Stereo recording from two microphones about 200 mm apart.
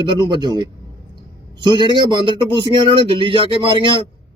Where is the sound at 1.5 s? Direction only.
20° right (ahead or behind).